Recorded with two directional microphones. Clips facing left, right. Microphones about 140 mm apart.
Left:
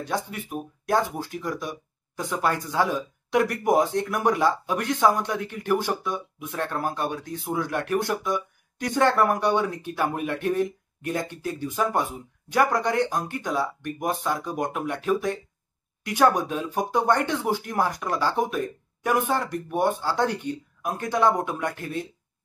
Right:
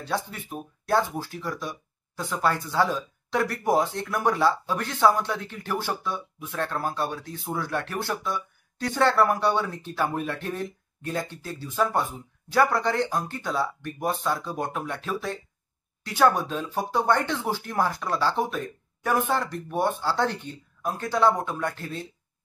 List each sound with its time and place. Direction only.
0.0 s speech: 15° left (ahead or behind)